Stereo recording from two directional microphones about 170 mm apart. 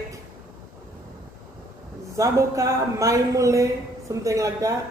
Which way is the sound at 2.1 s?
20° right (ahead or behind).